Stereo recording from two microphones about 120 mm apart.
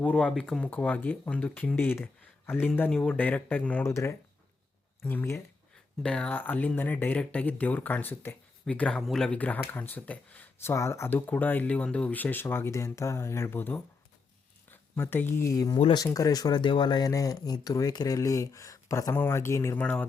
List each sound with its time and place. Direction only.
0.0 s speech: 10° left (ahead or behind)
6.0 s speech: 10° left (ahead or behind)
15.5 s speech: 30° left (ahead or behind); by 20.1 s 15° left (ahead or behind)